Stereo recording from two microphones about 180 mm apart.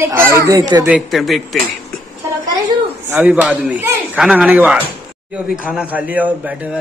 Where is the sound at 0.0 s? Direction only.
15° right (ahead or behind).